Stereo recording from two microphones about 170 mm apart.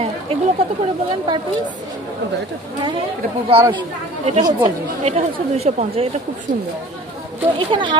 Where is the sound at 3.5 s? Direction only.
35° right (ahead or behind).